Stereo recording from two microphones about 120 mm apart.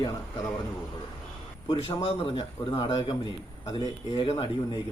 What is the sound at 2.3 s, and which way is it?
Speech, 40° left (ahead or behind).